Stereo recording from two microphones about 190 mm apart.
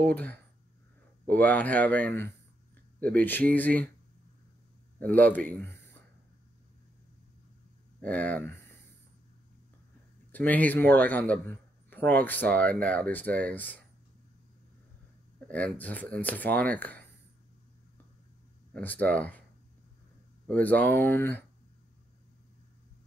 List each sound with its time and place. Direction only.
0.0 s a man's voice: 10° left (ahead or behind)
5.0 s speech: 10° left (ahead or behind)
8.0 s a man's voice: 10° left (ahead or behind)
10.3 s a man's voice: 10° left (ahead or behind)
15.4 s a man's voice: 5° left (ahead or behind)
18.7 s a man's voice: 10° left (ahead or behind)
20.4 s a man's voice: 5° left (ahead or behind)